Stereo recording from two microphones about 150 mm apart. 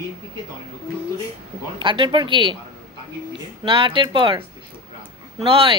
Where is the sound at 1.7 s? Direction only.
30° right (ahead or behind).